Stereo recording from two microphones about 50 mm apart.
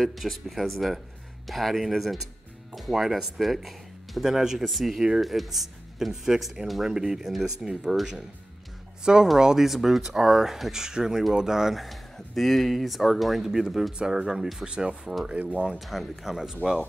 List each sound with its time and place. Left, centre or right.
0.0 s speech: centre
15.3 s speech: right
15.8 s speech: centre